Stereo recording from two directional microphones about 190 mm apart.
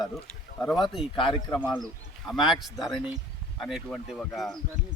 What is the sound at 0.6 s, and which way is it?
Speech, centre (ahead or behind).